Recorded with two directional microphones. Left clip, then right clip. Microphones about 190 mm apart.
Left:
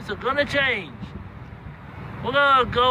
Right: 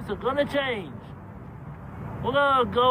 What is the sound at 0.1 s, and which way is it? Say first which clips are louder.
Speech: left 3 dB; 5° right (ahead or behind).